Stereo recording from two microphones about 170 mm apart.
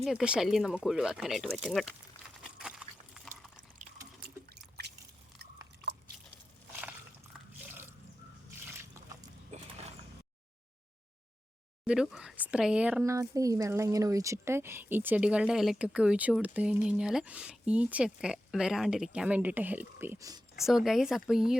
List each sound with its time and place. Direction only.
0.0 s speech: 5° right (ahead or behind)
2.4 s a sound: 5° right (ahead or behind)
3.8 s drip: 60° right (ahead or behind)
7.6 s drip: 10° right (ahead or behind)
9.5 s a sound: 40° right (ahead or behind)
11.9 s speech: 5° right (ahead or behind)
13.0 s speech: 20° right (ahead or behind)
20.6 s speech: centre (ahead or behind)